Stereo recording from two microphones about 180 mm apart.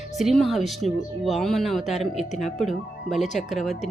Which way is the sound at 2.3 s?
40° left (ahead or behind).